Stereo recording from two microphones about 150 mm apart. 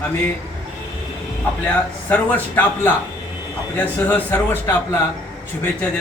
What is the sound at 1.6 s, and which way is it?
A man's voice, 10° left (ahead or behind).